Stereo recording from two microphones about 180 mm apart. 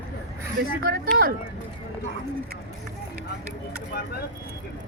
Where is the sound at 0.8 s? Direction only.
55° right (ahead or behind).